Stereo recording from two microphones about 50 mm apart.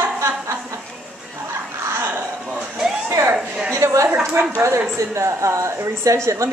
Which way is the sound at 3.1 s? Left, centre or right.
Right.